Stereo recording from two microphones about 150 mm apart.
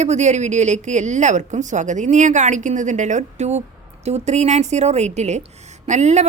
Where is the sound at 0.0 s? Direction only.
50° right (ahead or behind).